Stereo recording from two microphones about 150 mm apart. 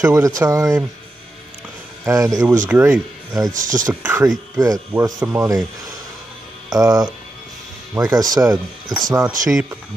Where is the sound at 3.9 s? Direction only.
15° right (ahead or behind).